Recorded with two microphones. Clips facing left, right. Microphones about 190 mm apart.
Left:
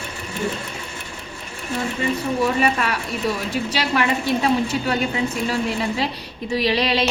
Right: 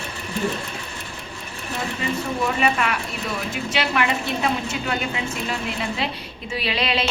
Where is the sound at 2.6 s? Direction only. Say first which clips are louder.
Left 1 dB; 35° left (ahead or behind).